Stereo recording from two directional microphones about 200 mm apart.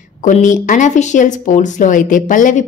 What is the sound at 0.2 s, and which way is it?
Speech, 40° left (ahead or behind).